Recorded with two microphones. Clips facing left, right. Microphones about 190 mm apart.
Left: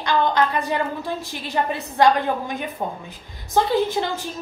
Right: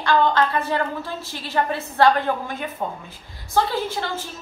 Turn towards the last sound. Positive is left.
turn(degrees=15)  # may be behind; listen again after turning